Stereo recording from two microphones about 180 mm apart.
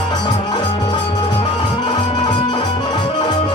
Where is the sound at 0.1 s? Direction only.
25° left (ahead or behind).